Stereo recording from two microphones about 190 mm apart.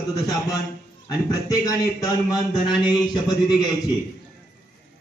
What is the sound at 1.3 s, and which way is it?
A man's voice, 15° left (ahead or behind).